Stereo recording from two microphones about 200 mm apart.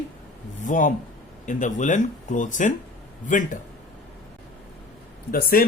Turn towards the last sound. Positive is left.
turn(degrees=45)  # may be behind; listen again after turning